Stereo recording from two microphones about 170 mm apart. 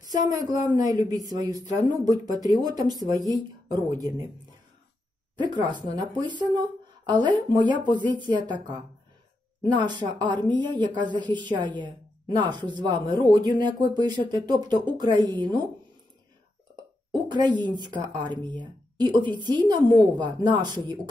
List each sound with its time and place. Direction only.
0.2 s a woman's voice: 20° right (ahead or behind)
5.4 s a woman's voice: 25° right (ahead or behind)
17.1 s a woman's voice: 25° right (ahead or behind)